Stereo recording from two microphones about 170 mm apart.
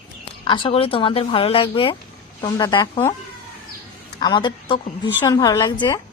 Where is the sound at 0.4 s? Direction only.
30° left (ahead or behind).